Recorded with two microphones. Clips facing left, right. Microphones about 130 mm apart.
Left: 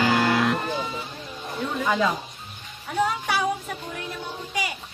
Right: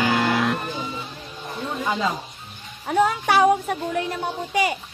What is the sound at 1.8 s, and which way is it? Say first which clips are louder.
Speech: left 1 dB; 25° right (ahead or behind).